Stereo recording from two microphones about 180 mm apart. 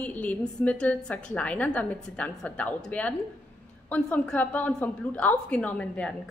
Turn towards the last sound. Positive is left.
turn(degrees=5)  # may be behind; listen again after turning